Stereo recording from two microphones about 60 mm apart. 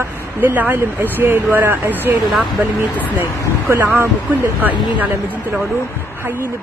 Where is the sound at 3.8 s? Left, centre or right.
Right.